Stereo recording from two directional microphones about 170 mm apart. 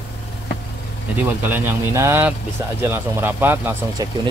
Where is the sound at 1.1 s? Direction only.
10° right (ahead or behind).